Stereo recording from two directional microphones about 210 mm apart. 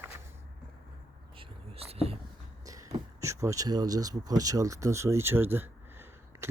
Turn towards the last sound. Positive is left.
turn(degrees=-10)  # may be behind; listen again after turning